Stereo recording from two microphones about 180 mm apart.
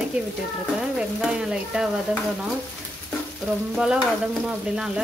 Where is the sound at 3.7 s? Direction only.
5° right (ahead or behind).